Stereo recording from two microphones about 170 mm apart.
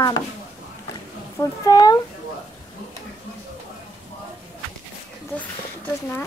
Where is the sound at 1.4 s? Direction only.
20° left (ahead or behind).